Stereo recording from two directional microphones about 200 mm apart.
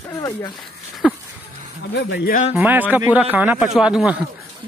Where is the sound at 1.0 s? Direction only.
5° right (ahead or behind).